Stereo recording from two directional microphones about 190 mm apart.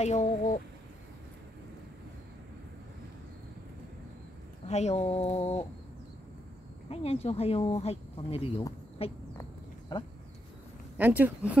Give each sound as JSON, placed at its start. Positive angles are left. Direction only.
{"t": 0.0, "sound": "speech", "side_deg": 35}
{"t": 4.6, "sound": "speech", "side_deg": 35}
{"t": 6.9, "sound": "speech", "side_deg": 30}
{"t": 9.4, "sound": "a sound", "side_deg": 25}
{"t": 11.0, "sound": "a woman's voice", "side_deg": -10}